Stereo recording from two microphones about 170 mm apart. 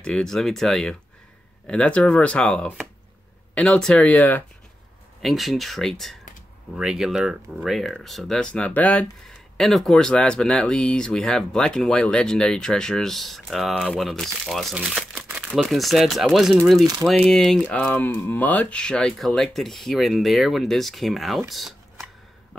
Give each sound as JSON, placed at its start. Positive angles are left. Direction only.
{"t": 0.0, "sound": "speech", "side_deg": 5}
{"t": 21.5, "sound": "shuffling cards", "side_deg": 0}